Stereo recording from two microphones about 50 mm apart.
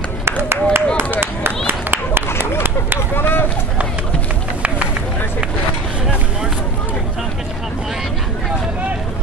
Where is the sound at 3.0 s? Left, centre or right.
Left.